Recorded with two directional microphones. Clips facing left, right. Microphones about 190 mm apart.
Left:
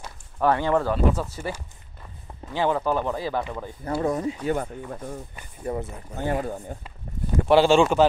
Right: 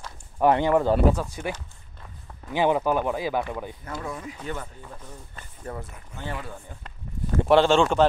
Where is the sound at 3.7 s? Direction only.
40° left (ahead or behind).